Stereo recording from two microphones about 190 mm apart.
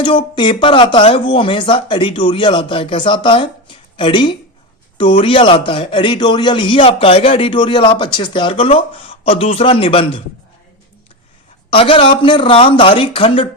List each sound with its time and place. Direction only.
0.0 s a man's voice: 25° left (ahead or behind)
11.7 s a man's voice: 30° left (ahead or behind)